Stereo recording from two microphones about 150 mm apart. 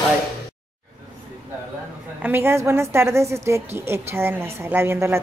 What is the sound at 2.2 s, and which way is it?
A woman's voice, 15° right (ahead or behind).